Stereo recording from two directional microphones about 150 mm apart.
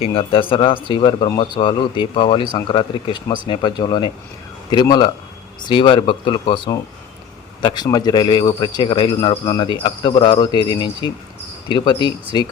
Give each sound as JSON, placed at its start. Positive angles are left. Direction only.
{"t": 0.0, "sound": "a man's voice", "side_deg": 35}